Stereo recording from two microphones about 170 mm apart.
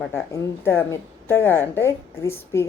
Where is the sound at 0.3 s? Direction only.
15° left (ahead or behind).